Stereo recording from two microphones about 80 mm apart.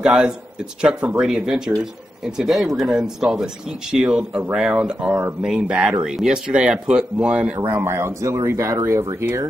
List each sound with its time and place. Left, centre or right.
0.0 s speech: centre
7.7 s speech: right